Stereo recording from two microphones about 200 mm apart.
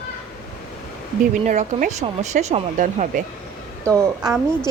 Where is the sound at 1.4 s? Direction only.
35° right (ahead or behind).